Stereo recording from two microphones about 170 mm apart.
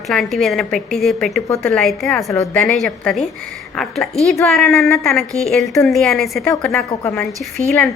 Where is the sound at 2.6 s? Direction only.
Centre (ahead or behind).